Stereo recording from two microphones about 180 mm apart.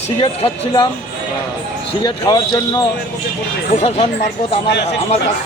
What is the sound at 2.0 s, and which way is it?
Speech, 25° left (ahead or behind).